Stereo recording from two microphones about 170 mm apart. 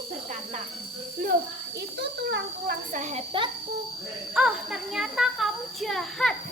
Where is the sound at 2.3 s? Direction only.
65° right (ahead or behind).